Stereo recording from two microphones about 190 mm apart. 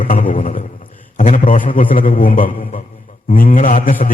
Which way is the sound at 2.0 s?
45° left (ahead or behind).